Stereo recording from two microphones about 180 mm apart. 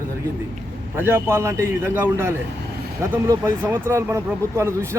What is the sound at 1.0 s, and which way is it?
Speech, 15° right (ahead or behind).